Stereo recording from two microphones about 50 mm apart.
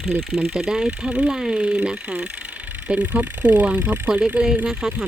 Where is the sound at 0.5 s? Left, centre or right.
Centre; by 4.1 s right.